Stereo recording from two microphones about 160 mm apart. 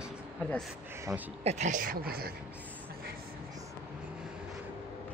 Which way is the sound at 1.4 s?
50° right (ahead or behind).